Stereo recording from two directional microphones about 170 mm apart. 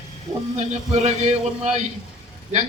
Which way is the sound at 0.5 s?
40° right (ahead or behind).